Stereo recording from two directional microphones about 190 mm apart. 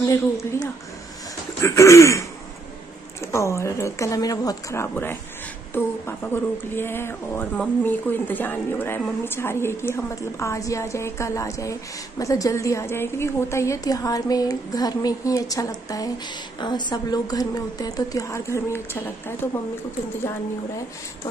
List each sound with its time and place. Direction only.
0.0 s a woman's voice: 15° left (ahead or behind)